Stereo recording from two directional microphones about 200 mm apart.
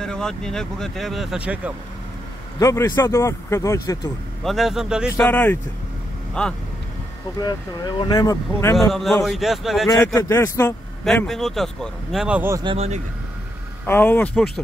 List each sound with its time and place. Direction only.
0.0 s speech: 5° left (ahead or behind)
2.6 s speech: 15° left (ahead or behind)
4.5 s speech: centre (ahead or behind)
5.2 s speech: 10° left (ahead or behind)
7.3 s speech: 20° left (ahead or behind)
8.7 s speech: centre (ahead or behind)
9.8 s speech: 15° left (ahead or behind)
11.1 s speech: centre (ahead or behind)
12.6 s speech: 30° right (ahead or behind)
13.8 s speech: 10° left (ahead or behind)